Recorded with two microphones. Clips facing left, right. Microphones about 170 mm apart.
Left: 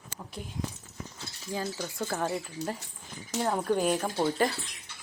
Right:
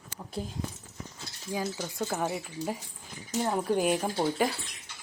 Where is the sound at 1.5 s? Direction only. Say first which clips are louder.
Right 1 dB; 5° right (ahead or behind).